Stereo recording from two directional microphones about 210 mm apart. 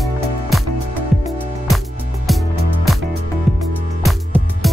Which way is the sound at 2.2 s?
Centre (ahead or behind).